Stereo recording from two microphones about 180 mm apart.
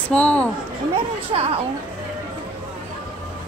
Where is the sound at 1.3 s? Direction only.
30° right (ahead or behind).